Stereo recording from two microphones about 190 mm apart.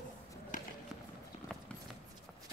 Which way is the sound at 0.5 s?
45° left (ahead or behind).